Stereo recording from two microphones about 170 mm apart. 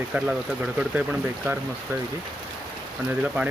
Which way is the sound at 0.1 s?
5° right (ahead or behind).